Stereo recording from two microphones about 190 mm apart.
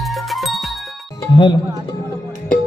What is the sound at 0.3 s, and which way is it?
Music, centre (ahead or behind).